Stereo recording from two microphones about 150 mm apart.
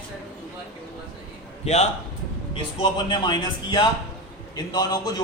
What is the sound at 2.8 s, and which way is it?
A man's voice, 30° left (ahead or behind).